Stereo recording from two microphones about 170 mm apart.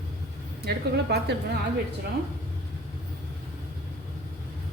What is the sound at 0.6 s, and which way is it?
Speech, 75° right (ahead or behind).